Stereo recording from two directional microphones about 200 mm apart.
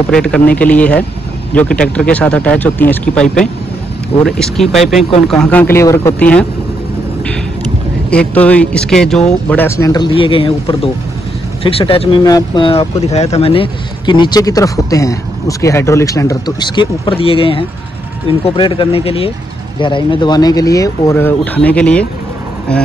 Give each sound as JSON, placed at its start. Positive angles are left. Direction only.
{"t": 0.1, "sound": "speech", "side_deg": 5}
{"t": 8.1, "sound": "speech", "side_deg": 5}